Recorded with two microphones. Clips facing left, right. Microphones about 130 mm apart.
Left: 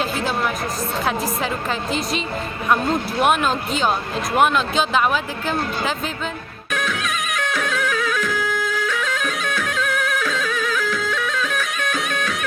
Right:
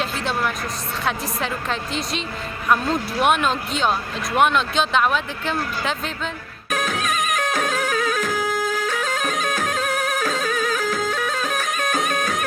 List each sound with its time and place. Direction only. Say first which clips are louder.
0.0 s speech: left 2 dB; centre (ahead or behind)
1.9 s speech: left 3 dB; centre (ahead or behind)
6.7 s music: right 1 dB; 40° right (ahead or behind)